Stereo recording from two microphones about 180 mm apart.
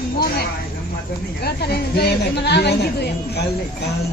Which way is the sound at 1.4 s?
60° left (ahead or behind).